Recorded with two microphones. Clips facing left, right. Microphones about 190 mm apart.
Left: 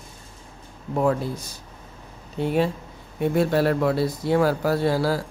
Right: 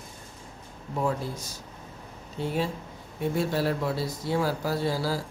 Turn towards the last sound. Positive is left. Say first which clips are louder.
# left 6 dB
turn(degrees=60)  # may be behind; listen again after turning